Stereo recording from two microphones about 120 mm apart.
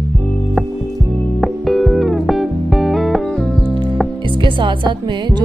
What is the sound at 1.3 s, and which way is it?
Music, centre (ahead or behind).